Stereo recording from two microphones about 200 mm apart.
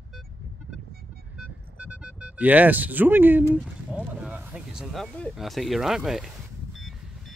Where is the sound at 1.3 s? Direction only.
5° right (ahead or behind).